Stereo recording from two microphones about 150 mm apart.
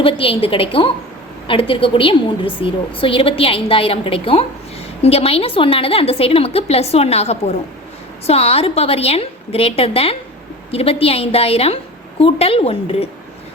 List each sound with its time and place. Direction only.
0.0 s a woman's voice: 35° left (ahead or behind)